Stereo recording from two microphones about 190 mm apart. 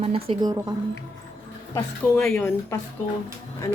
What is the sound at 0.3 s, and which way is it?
Speech, 20° right (ahead or behind).